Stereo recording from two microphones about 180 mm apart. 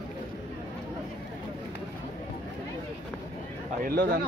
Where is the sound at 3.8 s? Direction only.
55° right (ahead or behind).